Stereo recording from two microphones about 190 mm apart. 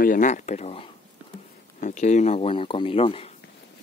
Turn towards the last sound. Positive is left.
turn(degrees=30)  # may be behind; listen again after turning